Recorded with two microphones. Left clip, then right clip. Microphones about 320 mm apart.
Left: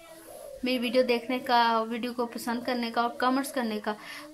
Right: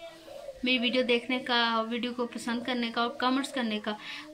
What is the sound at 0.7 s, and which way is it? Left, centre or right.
Speech, centre.